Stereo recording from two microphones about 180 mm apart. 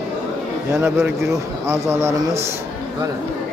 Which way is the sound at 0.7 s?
15° right (ahead or behind).